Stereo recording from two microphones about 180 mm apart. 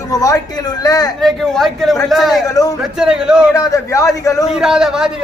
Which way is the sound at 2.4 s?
20° left (ahead or behind).